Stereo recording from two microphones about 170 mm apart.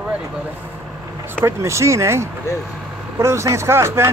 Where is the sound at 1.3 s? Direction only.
15° right (ahead or behind).